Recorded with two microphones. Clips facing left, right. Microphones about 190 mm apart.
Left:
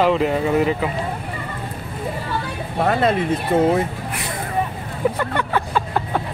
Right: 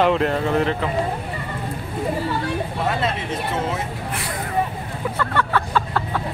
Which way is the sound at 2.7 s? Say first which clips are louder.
Left 10 dB; 50° left (ahead or behind).